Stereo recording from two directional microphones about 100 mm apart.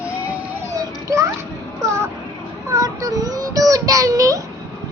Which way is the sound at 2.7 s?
35° right (ahead or behind).